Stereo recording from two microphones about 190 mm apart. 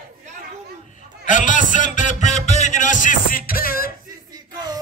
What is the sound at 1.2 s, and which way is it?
Music, 40° left (ahead or behind).